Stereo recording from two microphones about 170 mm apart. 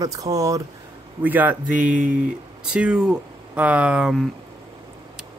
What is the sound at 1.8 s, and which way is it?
Speech, 50° right (ahead or behind).